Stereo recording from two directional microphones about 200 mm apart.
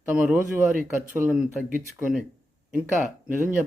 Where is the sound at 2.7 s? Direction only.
5° right (ahead or behind).